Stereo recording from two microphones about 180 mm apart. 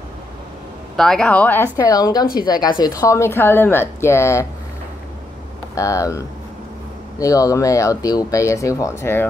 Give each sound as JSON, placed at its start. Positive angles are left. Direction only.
{"t": 0.9, "sound": "speech", "side_deg": 5}
{"t": 5.8, "sound": "speech", "side_deg": 15}